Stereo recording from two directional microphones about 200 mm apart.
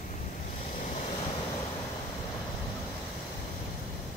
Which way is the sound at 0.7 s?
35° left (ahead or behind).